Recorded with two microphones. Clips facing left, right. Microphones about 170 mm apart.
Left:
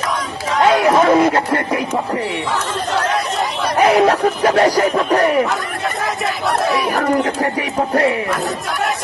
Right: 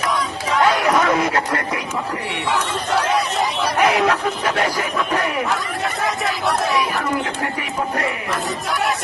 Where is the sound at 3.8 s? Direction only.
35° left (ahead or behind).